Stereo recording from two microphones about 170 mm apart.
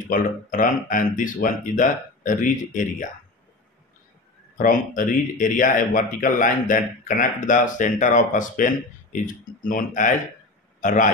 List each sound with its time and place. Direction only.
0.1 s speech: 50° left (ahead or behind)
4.6 s a man's voice: 55° left (ahead or behind)